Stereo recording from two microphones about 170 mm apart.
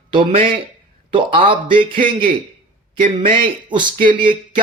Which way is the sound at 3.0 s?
30° right (ahead or behind).